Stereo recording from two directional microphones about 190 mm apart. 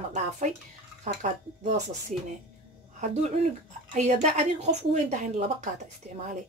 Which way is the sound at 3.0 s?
35° right (ahead or behind).